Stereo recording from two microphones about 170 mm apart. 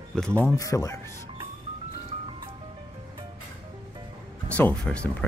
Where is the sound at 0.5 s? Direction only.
20° left (ahead or behind).